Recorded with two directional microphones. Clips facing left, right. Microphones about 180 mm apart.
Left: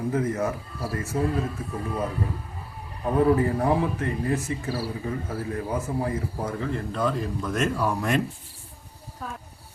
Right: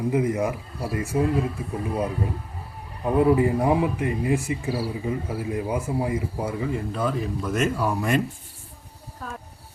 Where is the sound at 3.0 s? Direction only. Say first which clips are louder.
Right 2 dB; 15° right (ahead or behind).